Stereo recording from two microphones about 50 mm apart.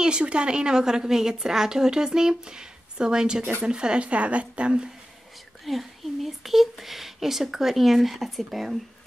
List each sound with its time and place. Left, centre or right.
0.0 s a woman's voice: centre
5.7 s speech: centre